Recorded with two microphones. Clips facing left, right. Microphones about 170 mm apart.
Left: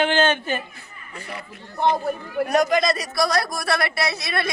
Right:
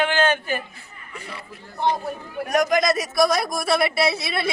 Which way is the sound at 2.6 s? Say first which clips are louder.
Right 1 dB; 15° right (ahead or behind).